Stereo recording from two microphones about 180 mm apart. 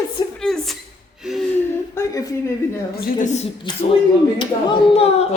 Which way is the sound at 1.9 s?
20° left (ahead or behind).